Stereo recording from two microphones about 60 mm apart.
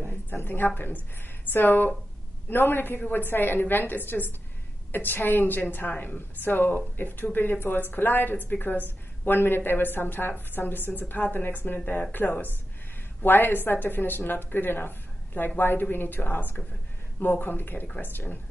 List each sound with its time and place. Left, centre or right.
0.3 s a woman's voice: left